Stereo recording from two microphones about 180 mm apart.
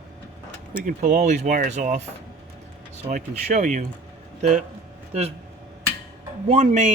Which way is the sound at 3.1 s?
40° right (ahead or behind).